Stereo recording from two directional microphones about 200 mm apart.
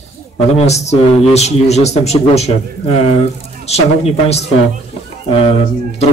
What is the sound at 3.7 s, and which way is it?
Speech, 30° left (ahead or behind).